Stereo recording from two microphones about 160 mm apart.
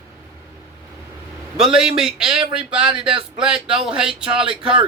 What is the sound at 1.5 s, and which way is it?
A man's voice, 5° right (ahead or behind).